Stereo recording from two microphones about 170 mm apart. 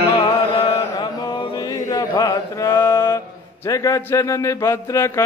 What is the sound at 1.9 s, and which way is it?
Mantra, 20° left (ahead or behind).